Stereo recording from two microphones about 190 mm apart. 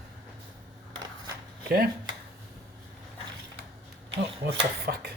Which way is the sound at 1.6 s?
55° right (ahead or behind).